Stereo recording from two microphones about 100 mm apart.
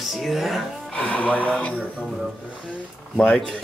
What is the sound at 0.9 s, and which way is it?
Speech, 10° left (ahead or behind).